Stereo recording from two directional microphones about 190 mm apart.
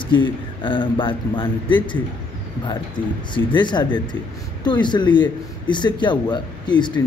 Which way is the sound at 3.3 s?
25° left (ahead or behind).